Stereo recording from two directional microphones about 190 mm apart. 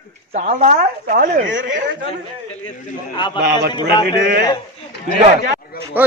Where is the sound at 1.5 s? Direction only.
80° right.